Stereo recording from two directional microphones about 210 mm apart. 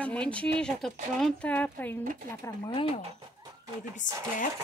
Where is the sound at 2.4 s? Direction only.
20° left (ahead or behind).